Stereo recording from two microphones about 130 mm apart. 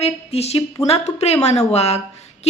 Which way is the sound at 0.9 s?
55° left (ahead or behind).